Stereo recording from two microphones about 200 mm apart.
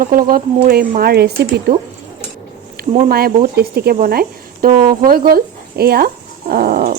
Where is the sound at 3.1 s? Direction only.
50° right (ahead or behind).